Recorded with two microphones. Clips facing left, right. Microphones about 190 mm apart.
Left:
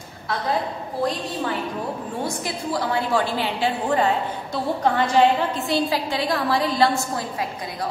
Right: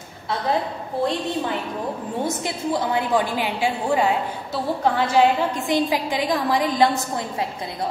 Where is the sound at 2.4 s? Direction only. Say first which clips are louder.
Right 2 dB; 20° right (ahead or behind).